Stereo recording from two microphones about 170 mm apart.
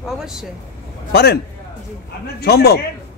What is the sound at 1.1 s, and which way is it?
Speech, 70° left (ahead or behind).